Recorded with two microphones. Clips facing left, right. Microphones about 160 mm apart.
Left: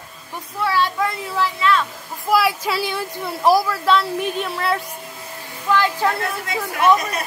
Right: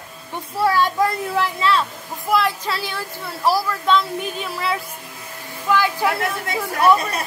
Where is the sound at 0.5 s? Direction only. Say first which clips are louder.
Right 2 dB; 45° right (ahead or behind).